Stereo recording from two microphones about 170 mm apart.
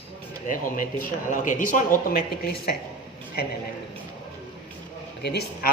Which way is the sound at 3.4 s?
65° left (ahead or behind).